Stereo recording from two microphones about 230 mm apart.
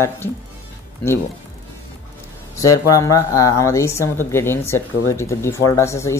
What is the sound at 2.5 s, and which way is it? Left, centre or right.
Speech, centre.